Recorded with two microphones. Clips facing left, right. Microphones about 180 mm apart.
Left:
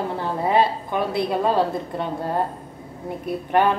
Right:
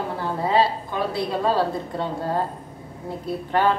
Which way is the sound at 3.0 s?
20° left (ahead or behind).